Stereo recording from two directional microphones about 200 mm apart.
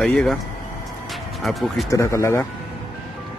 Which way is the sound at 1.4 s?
Centre (ahead or behind).